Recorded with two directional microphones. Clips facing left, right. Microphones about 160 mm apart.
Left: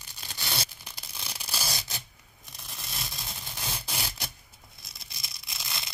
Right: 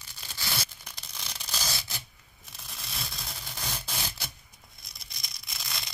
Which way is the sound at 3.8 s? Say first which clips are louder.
Left 1 dB; 10° left (ahead or behind).